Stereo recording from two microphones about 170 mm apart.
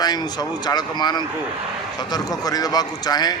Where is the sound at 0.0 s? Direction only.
25° left (ahead or behind).